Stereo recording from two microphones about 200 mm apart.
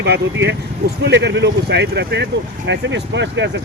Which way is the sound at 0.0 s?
60° right (ahead or behind).